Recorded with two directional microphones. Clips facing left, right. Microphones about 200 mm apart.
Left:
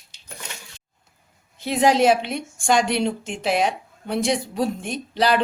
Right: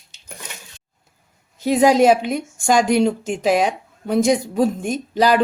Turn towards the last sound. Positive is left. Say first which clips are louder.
# right 4 dB
turn(degrees=-40)  # may be behind; listen again after turning